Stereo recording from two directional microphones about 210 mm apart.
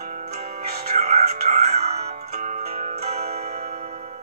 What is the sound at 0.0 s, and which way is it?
Music, 30° right (ahead or behind).